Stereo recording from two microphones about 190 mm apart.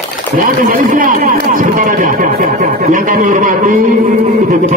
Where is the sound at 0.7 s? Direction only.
45° right (ahead or behind).